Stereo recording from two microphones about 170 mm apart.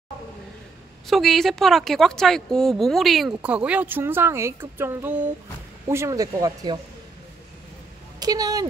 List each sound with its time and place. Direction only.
1.0 s speech: centre (ahead or behind); by 6.8 s 25° right (ahead or behind)
8.2 s speech: 20° right (ahead or behind)